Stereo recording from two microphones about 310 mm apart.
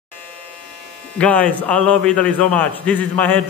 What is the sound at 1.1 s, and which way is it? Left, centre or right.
A man's voice, centre.